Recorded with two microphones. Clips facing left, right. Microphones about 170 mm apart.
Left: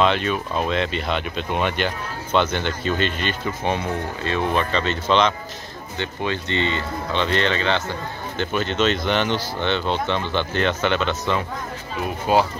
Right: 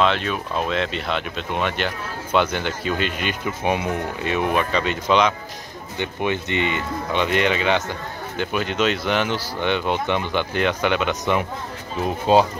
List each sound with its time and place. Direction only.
0.0 s speech: centre (ahead or behind); by 11.4 s 15° right (ahead or behind)
12.3 s speech: 25° right (ahead or behind)